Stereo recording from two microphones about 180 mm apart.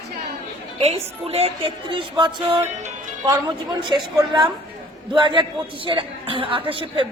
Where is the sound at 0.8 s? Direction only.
35° right (ahead or behind).